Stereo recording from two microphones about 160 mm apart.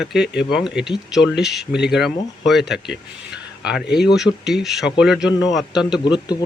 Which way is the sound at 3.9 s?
Centre (ahead or behind).